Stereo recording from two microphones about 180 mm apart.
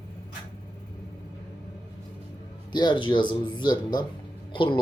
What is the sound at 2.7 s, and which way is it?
Speech, 25° left (ahead or behind).